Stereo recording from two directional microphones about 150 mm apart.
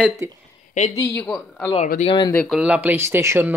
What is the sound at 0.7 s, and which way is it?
Speech, 50° left (ahead or behind).